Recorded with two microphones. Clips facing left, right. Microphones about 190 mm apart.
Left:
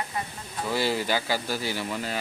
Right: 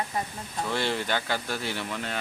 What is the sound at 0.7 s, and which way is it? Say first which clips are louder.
A man's voice: left 3 dB; 5° left (ahead or behind).